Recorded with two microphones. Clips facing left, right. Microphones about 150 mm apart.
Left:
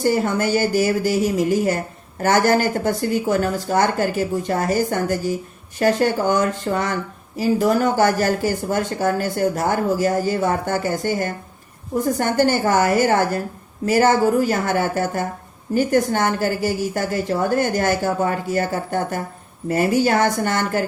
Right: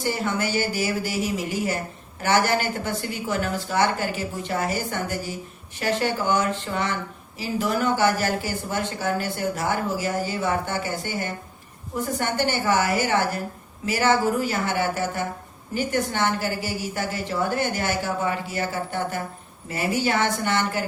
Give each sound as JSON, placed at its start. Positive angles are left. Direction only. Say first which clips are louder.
{"t": 0.0, "sound": "speech", "louder": "left 7 dB", "side_deg": 45}